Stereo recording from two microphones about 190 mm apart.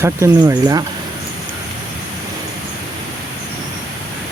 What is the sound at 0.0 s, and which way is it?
Speech, 15° right (ahead or behind).